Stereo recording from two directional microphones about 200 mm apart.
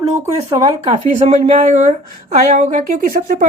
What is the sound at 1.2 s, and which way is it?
Speech, 35° right (ahead or behind).